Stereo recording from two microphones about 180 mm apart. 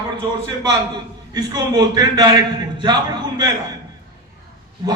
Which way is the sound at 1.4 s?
20° right (ahead or behind).